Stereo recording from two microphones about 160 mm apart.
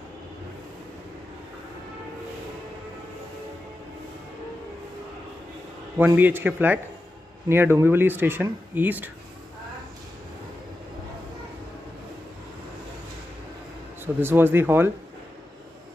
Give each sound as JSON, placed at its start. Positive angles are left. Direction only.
{"t": 5.9, "sound": "speech", "side_deg": -10}
{"t": 14.0, "sound": "speech", "side_deg": -15}